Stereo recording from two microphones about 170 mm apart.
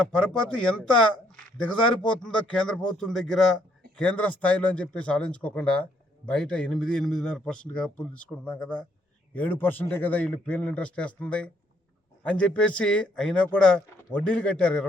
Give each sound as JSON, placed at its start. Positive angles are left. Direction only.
{"t": 0.6, "sound": "a man's voice", "side_deg": 5}